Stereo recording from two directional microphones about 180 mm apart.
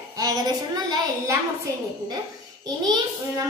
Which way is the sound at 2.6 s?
20° right (ahead or behind).